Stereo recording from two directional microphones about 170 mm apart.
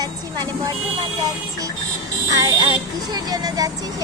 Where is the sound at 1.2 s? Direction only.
20° right (ahead or behind).